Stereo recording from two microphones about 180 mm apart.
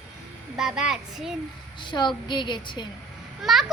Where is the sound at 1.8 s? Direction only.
25° left (ahead or behind).